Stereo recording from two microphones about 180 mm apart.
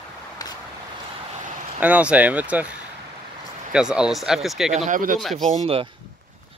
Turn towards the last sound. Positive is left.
turn(degrees=-35)  # may be behind; listen again after turning